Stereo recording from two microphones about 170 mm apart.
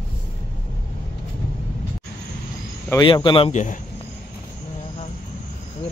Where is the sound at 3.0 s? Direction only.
30° left (ahead or behind).